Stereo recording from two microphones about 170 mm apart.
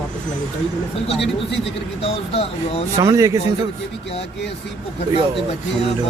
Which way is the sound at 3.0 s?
20° right (ahead or behind).